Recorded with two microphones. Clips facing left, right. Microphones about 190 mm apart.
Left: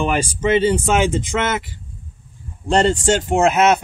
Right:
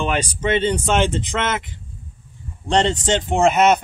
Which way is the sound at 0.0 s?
5° left (ahead or behind).